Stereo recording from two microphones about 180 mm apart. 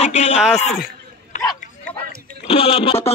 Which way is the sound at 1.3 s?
40° left (ahead or behind).